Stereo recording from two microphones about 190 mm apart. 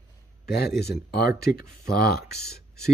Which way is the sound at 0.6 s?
60° left (ahead or behind).